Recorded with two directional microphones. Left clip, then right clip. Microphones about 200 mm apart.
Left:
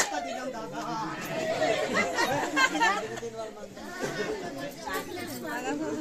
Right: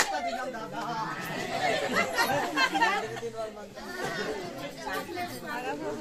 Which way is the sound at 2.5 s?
50° left (ahead or behind).